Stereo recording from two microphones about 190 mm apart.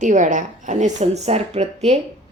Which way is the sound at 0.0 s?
40° right (ahead or behind).